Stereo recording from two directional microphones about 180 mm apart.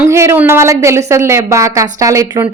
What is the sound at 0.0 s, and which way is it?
A woman's voice, 15° right (ahead or behind).